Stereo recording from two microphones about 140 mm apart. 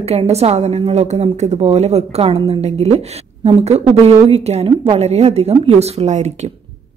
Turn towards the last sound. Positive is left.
turn(degrees=-55)  # may be behind; listen again after turning